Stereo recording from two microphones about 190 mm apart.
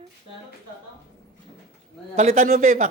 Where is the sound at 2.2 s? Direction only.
40° right (ahead or behind).